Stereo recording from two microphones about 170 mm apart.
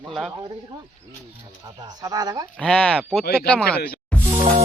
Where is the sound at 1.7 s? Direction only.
25° right (ahead or behind).